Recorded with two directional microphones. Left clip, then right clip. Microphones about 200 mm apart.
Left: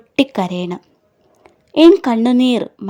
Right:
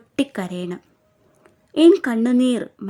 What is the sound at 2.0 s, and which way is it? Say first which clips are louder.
Speech: left 5 dB; 5° left (ahead or behind).